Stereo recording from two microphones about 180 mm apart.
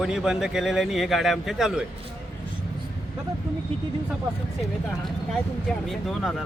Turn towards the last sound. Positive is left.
turn(degrees=0)  # may be behind; listen again after turning